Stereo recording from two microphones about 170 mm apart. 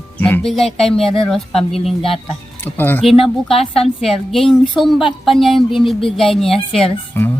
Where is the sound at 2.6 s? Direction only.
10° left (ahead or behind).